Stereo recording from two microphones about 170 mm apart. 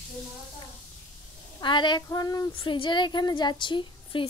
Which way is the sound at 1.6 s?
30° left (ahead or behind).